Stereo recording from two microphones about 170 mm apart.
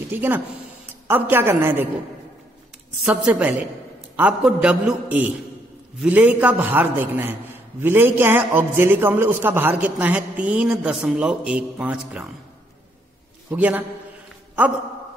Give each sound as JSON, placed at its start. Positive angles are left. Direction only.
{"t": 0.1, "sound": "a man's voice", "side_deg": -10}
{"t": 3.0, "sound": "a woman's voice", "side_deg": -5}
{"t": 13.6, "sound": "a man's voice", "side_deg": -10}